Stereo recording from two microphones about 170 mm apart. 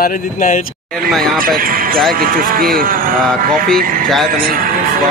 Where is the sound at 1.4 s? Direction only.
55° right (ahead or behind).